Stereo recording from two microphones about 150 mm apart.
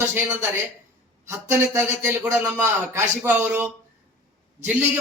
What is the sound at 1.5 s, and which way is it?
A man's voice, 15° right (ahead or behind).